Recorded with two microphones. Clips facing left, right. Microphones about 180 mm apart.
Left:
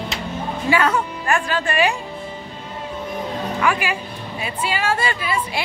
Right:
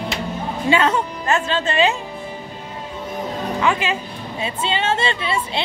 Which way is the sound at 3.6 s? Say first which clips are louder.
Right 1 dB; 20° right (ahead or behind).